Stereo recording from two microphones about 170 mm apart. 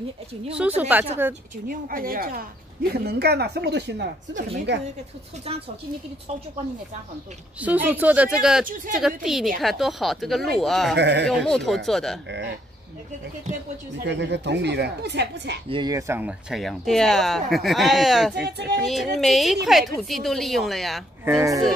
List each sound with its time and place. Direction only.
0.6 s speech: 10° right (ahead or behind)
1.7 s speech: 55° right (ahead or behind); by 4.4 s 85° right
5.5 s a woman's voice: 35° right (ahead or behind)
7.6 s speech: 10° right (ahead or behind)
11.0 s speech: 90° right
11.2 s speech: 5° left (ahead or behind)
14.0 s speech: 90° right
15.7 s speech: 20° right (ahead or behind); by 18.3 s centre (ahead or behind)
18.3 s speech: 75° right (ahead or behind)
18.8 s speech: centre (ahead or behind)
21.3 s speech: 20° right (ahead or behind)